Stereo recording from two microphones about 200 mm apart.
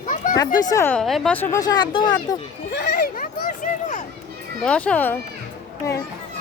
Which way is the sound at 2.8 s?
45° left (ahead or behind).